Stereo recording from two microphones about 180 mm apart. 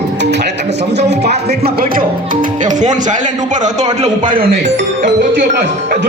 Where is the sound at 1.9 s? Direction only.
50° right (ahead or behind).